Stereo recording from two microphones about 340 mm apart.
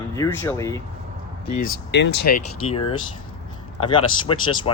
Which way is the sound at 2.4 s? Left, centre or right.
Centre.